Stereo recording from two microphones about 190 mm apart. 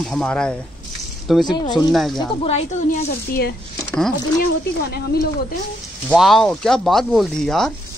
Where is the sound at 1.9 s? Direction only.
Centre (ahead or behind).